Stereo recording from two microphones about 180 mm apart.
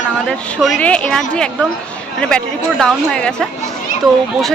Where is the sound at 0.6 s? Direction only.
5° left (ahead or behind).